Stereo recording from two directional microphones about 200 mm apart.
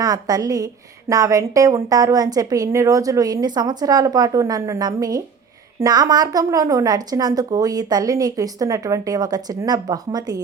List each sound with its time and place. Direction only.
0.0 s a woman's voice: 20° right (ahead or behind)